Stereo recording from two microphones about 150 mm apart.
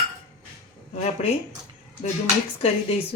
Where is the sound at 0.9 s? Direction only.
45° left (ahead or behind).